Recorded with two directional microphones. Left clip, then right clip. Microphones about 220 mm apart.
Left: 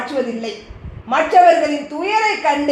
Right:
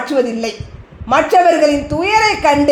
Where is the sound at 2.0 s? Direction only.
50° right (ahead or behind).